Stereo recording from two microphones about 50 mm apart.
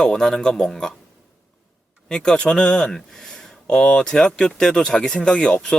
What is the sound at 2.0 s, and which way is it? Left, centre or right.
Speech, centre.